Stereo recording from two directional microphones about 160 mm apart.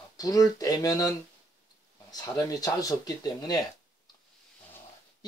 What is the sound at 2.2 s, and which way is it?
Speech, 20° left (ahead or behind).